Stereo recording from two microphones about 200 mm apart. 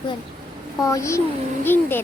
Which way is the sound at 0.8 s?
15° left (ahead or behind).